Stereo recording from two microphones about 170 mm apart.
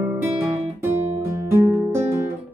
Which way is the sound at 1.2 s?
15° right (ahead or behind).